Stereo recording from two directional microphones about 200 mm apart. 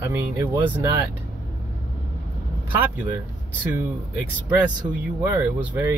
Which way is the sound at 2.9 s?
10° right (ahead or behind).